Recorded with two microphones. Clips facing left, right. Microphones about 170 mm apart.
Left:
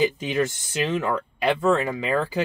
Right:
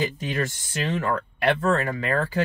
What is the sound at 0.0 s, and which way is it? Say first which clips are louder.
Speech: left 4 dB; 15° left (ahead or behind).